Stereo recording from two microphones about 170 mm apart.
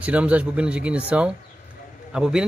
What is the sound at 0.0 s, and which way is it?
A man's voice, 10° right (ahead or behind).